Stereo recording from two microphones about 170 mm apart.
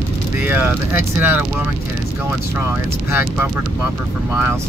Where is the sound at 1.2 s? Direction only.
10° right (ahead or behind).